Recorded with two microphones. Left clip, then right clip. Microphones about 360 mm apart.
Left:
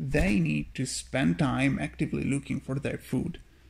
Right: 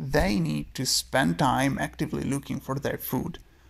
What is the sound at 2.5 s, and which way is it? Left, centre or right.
Speech, right.